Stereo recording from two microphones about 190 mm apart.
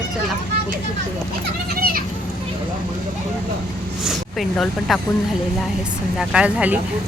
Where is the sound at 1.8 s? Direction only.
50° right (ahead or behind).